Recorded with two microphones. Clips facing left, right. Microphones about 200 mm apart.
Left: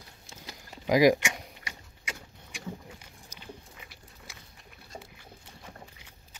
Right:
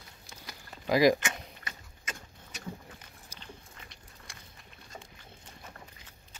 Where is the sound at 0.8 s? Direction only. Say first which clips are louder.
Left 2 dB; 15° left (ahead or behind).